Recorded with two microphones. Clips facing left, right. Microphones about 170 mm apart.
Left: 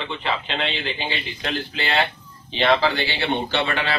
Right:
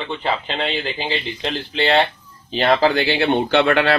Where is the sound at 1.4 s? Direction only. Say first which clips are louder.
Right 5 dB; 25° right (ahead or behind).